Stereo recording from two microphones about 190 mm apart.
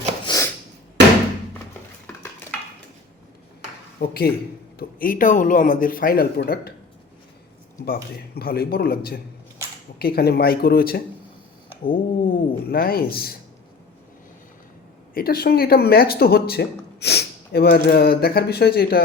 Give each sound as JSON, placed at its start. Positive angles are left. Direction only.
{"t": 0.3, "sound": "a sound", "side_deg": 15}
{"t": 4.0, "sound": "speech", "side_deg": 55}
{"t": 8.4, "sound": "speech", "side_deg": 55}
{"t": 15.1, "sound": "speech", "side_deg": 50}